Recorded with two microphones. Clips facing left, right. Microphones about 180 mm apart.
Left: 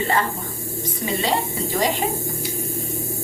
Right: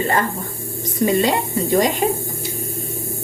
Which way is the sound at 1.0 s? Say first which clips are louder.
Right 6 dB; 45° right (ahead or behind).